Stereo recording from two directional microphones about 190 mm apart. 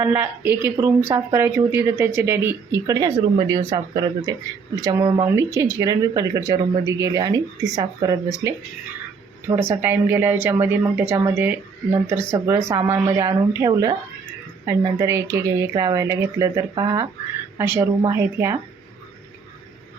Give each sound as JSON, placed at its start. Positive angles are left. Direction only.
{"t": 0.0, "sound": "speech", "side_deg": -10}